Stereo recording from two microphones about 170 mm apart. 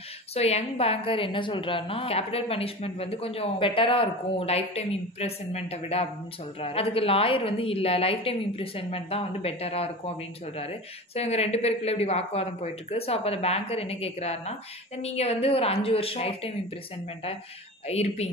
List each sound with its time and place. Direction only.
0.3 s a woman's voice: 40° left (ahead or behind)
17.8 s a woman's voice: 40° left (ahead or behind)